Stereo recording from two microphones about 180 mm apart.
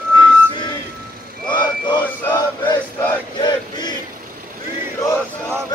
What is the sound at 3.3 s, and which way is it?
Battle cry, 25° left (ahead or behind).